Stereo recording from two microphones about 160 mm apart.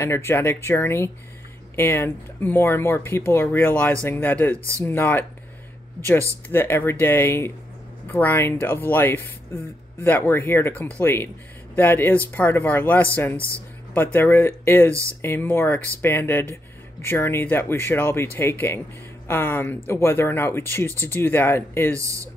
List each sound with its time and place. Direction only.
0.0 s speech: 15° left (ahead or behind)
6.5 s speech: 15° left (ahead or behind)
21.9 s speech: 20° right (ahead or behind)